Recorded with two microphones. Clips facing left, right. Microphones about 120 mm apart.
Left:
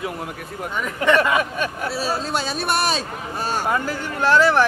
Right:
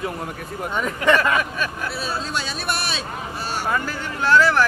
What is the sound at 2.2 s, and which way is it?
A man's voice, 45° left (ahead or behind).